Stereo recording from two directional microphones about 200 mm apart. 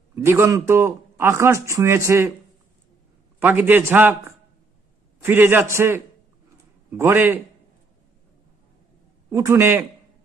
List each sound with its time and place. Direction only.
0.2 s speech: 10° right (ahead or behind)
3.4 s speech: 10° right (ahead or behind)
9.3 s speech: 15° right (ahead or behind)